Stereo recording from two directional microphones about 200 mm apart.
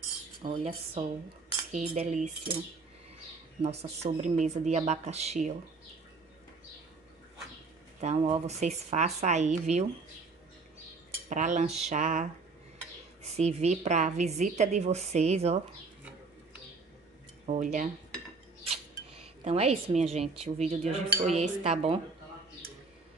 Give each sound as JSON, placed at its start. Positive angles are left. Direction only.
{"t": 0.4, "sound": "cutlery", "side_deg": -35}
{"t": 1.7, "sound": "cutlery", "side_deg": -35}
{"t": 3.6, "sound": "cutlery", "side_deg": -35}
{"t": 8.0, "sound": "cutlery", "side_deg": -35}
{"t": 11.2, "sound": "cutlery", "side_deg": -40}
{"t": 17.5, "sound": "cutlery", "side_deg": -40}
{"t": 19.4, "sound": "cutlery", "side_deg": -30}